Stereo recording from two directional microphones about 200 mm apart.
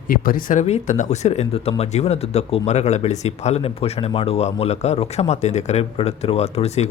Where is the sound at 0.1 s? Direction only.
45° left (ahead or behind).